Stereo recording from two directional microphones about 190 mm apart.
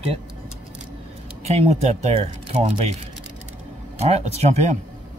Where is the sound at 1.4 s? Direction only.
35° right (ahead or behind).